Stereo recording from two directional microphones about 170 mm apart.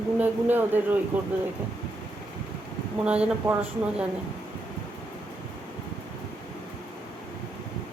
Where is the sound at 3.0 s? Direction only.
5° right (ahead or behind).